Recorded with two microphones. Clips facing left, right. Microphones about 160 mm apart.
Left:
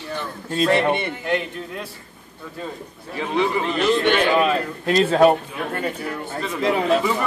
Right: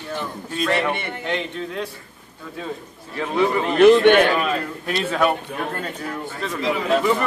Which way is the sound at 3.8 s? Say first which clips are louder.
Right 8 dB; 55° right (ahead or behind).